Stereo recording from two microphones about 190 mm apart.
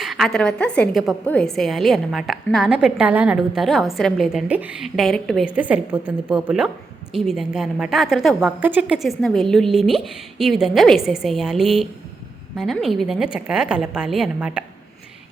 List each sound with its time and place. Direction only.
0.0 s a woman's voice: centre (ahead or behind)